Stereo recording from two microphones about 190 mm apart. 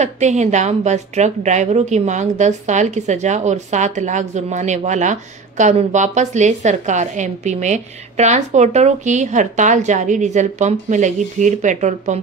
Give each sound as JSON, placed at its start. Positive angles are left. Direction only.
{"t": 0.0, "sound": "a woman's voice", "side_deg": -35}